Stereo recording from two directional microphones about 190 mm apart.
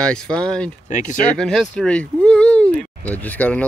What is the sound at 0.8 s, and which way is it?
Speech, 40° left (ahead or behind).